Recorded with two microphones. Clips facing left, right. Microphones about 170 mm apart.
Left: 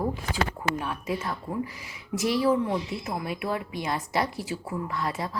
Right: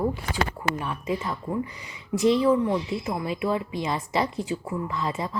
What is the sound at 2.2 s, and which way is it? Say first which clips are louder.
Speech: right 5 dB; 25° right (ahead or behind).